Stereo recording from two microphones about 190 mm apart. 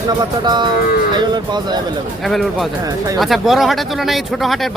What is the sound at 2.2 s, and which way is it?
Speech, centre (ahead or behind).